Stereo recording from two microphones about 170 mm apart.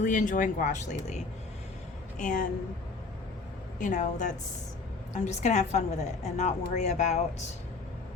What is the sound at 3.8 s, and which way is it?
A woman's voice, 45° left (ahead or behind).